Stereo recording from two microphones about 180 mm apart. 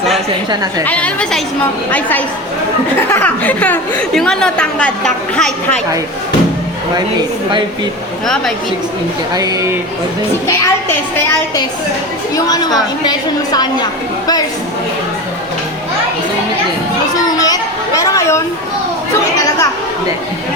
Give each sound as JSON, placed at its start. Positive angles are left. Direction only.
{"t": 0.9, "sound": "a child's voice", "side_deg": 5}
{"t": 9.3, "sound": "speech", "side_deg": -20}
{"t": 10.4, "sound": "a child's voice", "side_deg": 15}
{"t": 17.2, "sound": "a sound", "side_deg": 20}